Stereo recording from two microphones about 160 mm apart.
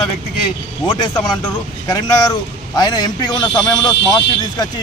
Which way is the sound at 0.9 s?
25° left (ahead or behind).